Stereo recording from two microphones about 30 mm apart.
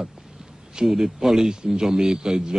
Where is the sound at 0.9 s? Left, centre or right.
Centre.